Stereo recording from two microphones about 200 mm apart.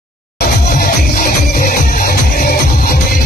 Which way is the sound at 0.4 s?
50° left (ahead or behind).